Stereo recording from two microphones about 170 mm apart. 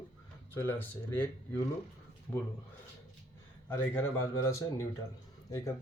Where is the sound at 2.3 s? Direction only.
10° left (ahead or behind).